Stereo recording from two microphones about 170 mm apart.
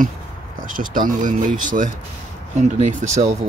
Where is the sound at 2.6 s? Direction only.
45° right (ahead or behind).